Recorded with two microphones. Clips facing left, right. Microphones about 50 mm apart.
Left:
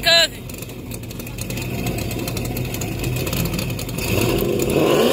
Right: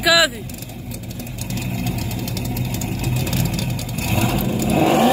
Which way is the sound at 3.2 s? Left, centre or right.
Centre.